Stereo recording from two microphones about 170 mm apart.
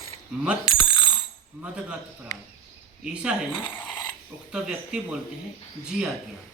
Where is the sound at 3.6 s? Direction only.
10° left (ahead or behind).